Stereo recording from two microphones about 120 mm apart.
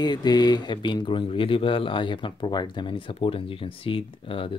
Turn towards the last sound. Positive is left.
turn(degrees=45)  # may be behind; listen again after turning